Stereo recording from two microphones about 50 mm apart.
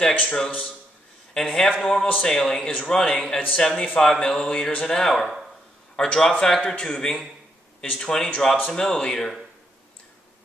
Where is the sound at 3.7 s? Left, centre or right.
Left.